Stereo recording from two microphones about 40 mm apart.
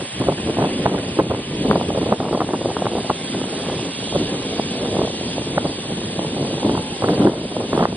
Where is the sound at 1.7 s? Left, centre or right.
Left.